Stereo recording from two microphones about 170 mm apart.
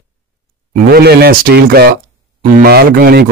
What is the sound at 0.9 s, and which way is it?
A man's voice, 70° right (ahead or behind).